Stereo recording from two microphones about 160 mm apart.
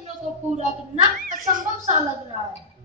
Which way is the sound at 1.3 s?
60° right (ahead or behind).